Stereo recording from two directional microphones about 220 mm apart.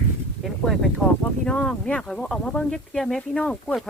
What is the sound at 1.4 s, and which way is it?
Speech, 5° left (ahead or behind).